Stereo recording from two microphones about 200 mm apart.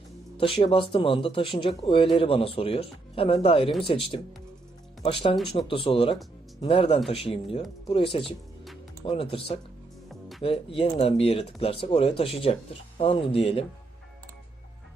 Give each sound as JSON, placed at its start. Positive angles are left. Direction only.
{"t": 0.3, "sound": "speech", "side_deg": 25}
{"t": 10.4, "sound": "speech", "side_deg": 30}